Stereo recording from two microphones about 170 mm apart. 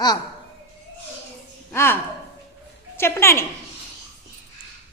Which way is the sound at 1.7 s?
15° left (ahead or behind).